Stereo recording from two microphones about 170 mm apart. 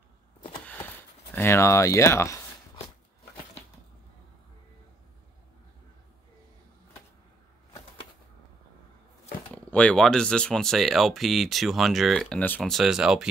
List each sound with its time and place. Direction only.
1.3 s speech: 15° left (ahead or behind)
9.5 s speech: 5° left (ahead or behind)